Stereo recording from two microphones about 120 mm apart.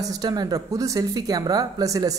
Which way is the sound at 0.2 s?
35° right (ahead or behind).